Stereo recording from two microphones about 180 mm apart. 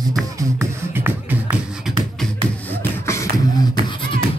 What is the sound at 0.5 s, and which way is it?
Beatboxing, 10° right (ahead or behind).